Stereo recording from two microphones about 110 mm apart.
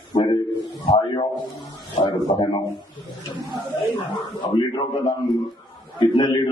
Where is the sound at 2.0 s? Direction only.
45° left (ahead or behind).